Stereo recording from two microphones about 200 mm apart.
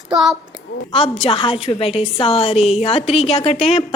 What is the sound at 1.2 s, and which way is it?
A woman's voice, 25° left (ahead or behind).